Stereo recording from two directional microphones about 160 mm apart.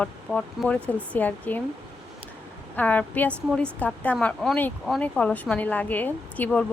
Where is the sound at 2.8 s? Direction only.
10° left (ahead or behind).